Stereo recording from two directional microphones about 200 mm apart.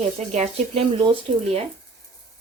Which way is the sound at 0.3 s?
30° right (ahead or behind).